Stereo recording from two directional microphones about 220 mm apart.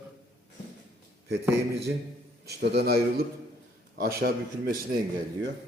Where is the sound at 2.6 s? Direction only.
45° right (ahead or behind).